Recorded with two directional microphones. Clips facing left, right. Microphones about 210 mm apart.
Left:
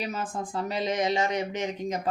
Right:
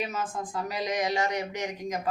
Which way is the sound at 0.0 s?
30° left (ahead or behind).